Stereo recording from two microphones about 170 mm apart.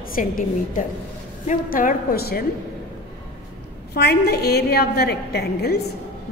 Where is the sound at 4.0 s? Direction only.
70° left (ahead or behind).